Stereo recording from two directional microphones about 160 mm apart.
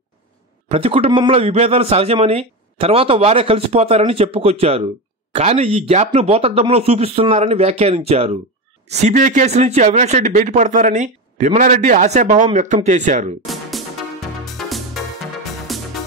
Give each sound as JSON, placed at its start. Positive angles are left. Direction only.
{"t": 0.7, "sound": "a man's voice", "side_deg": -35}
{"t": 13.5, "sound": "music", "side_deg": 0}
{"t": 15.7, "sound": "music", "side_deg": 0}